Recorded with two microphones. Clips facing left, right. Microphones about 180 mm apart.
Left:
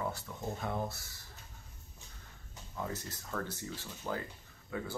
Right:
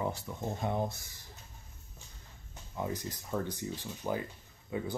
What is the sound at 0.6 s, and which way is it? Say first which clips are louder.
Speech: right 5 dB; 20° right (ahead or behind).